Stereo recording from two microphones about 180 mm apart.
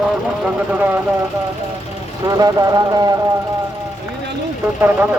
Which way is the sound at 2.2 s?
20° right (ahead or behind).